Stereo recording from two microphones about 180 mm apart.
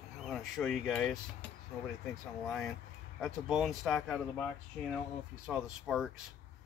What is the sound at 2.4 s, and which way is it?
Speech, centre (ahead or behind).